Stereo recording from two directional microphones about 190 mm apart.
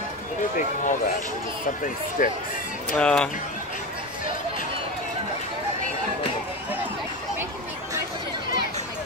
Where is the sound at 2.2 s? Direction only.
45° left (ahead or behind).